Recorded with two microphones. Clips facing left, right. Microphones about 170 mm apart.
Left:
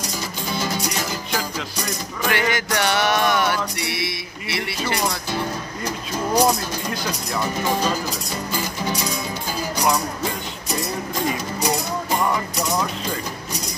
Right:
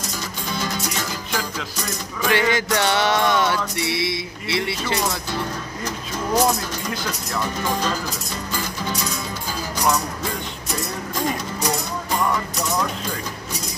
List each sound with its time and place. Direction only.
0.6 s music: 5° left (ahead or behind)
2.3 s music: 25° right (ahead or behind)
6.3 s speech: centre (ahead or behind)
7.6 s speech: 10° left (ahead or behind)
8.5 s music: 15° left (ahead or behind)
11.6 s music: 15° left (ahead or behind)